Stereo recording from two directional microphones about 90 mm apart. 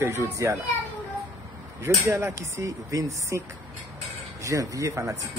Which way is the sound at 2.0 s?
35° right (ahead or behind).